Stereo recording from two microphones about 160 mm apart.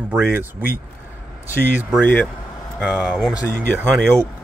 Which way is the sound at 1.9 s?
5° left (ahead or behind).